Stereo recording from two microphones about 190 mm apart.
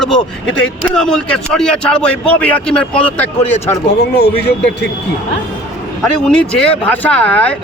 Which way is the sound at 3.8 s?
60° left (ahead or behind).